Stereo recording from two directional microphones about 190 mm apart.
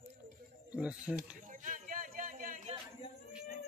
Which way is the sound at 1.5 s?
45° right (ahead or behind).